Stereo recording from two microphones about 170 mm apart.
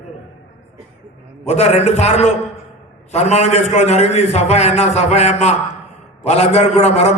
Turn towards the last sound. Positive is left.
turn(degrees=40)  # may be behind; listen again after turning